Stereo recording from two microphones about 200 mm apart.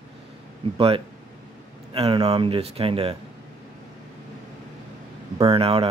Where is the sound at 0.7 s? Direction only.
30° right (ahead or behind).